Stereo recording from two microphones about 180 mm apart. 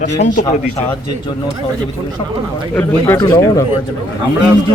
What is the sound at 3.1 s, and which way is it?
Speech, 20° left (ahead or behind).